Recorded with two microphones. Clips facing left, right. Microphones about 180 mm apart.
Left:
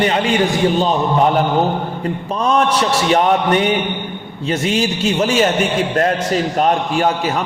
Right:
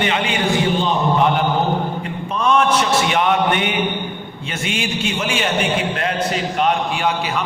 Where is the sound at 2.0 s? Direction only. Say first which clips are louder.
Left 3 dB; 35° left (ahead or behind).